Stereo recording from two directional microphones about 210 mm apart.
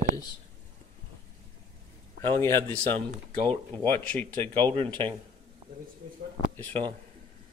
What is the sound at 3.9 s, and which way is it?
Speech, 10° left (ahead or behind).